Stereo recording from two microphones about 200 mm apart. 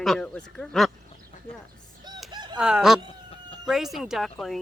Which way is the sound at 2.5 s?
5° right (ahead or behind).